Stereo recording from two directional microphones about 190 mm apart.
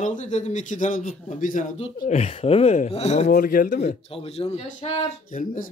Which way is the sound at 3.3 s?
50° left (ahead or behind).